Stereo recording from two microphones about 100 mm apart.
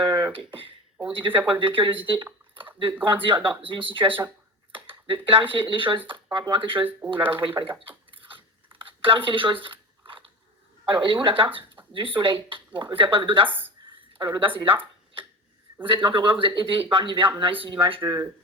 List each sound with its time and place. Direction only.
0.0 s a sound: 30° right (ahead or behind)
0.3 s speech: 60° right (ahead or behind)
7.7 s computer keyboard: 60° right (ahead or behind)
10.8 s speech: 55° right (ahead or behind)
13.8 s a sound: 55° right (ahead or behind)
15.8 s speech: 55° right (ahead or behind)